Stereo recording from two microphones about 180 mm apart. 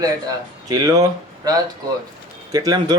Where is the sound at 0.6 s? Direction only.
20° right (ahead or behind).